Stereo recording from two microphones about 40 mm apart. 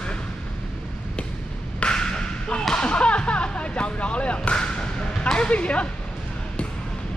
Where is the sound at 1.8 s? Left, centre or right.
Left.